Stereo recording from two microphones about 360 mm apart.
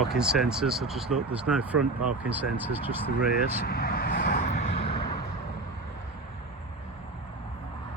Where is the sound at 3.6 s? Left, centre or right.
Left.